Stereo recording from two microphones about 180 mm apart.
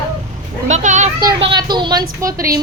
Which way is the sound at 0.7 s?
40° right (ahead or behind).